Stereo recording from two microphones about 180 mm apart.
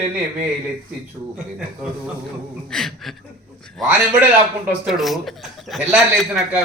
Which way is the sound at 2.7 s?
5° left (ahead or behind).